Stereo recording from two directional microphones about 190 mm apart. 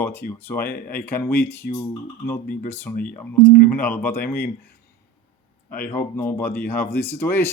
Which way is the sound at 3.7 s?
10° left (ahead or behind).